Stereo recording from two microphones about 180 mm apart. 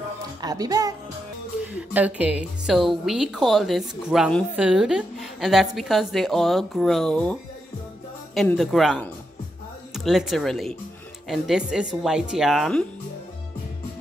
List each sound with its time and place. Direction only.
0.4 s a child's voice: 20° right (ahead or behind)
1.6 s a woman's voice: 5° right (ahead or behind)
8.4 s a woman's voice: centre (ahead or behind)